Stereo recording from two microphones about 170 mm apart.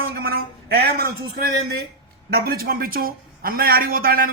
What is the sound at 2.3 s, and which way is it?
A man's voice, 65° right (ahead or behind).